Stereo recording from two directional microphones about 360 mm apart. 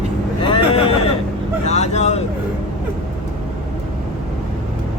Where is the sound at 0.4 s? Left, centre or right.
Centre.